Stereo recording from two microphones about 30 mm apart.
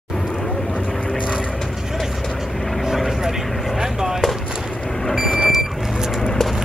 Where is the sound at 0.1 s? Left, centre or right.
Left.